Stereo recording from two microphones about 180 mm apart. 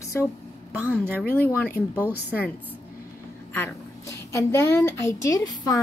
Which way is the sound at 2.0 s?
10° right (ahead or behind).